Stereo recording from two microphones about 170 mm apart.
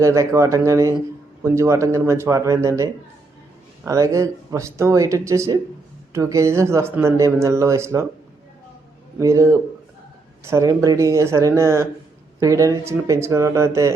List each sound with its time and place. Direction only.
0.0 s speech: 20° right (ahead or behind)
9.1 s speech: 15° right (ahead or behind)